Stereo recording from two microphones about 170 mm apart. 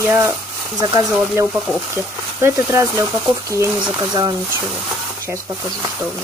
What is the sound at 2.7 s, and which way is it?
Speech, 15° right (ahead or behind).